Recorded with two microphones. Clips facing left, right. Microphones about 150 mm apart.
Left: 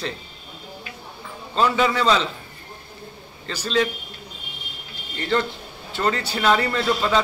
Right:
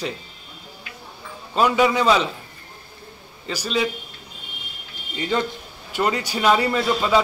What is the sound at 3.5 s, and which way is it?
Speech, 10° right (ahead or behind).